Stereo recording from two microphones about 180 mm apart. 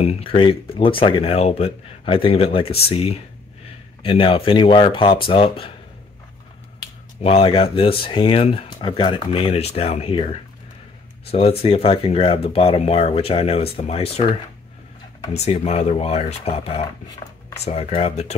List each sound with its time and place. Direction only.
0.0 s speech: 30° left (ahead or behind)
7.2 s speech: 35° left (ahead or behind)
15.3 s speech: 35° left (ahead or behind)